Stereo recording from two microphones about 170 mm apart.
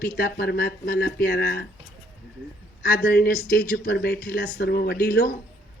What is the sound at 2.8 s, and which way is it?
Speech, 60° left (ahead or behind).